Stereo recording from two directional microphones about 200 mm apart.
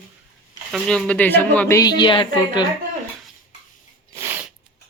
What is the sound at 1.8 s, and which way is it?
Speech, 20° left (ahead or behind).